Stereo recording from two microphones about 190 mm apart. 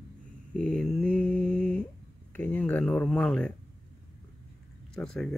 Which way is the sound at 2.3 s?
10° left (ahead or behind).